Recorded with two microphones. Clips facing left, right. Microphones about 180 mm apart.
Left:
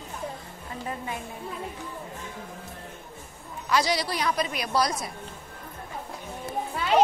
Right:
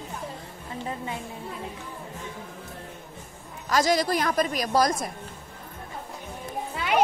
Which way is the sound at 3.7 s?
45° right (ahead or behind).